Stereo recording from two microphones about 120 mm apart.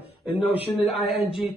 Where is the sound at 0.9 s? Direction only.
55° left (ahead or behind).